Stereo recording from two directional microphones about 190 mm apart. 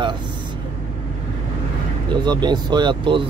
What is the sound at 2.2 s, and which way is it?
Speech, 20° right (ahead or behind).